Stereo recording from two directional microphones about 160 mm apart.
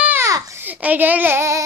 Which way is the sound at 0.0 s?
15° right (ahead or behind).